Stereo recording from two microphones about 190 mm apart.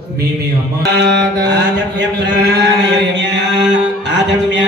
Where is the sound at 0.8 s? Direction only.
65° right (ahead or behind).